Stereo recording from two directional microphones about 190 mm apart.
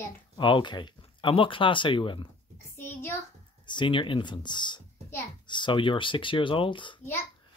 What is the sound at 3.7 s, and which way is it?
Speech, 25° left (ahead or behind).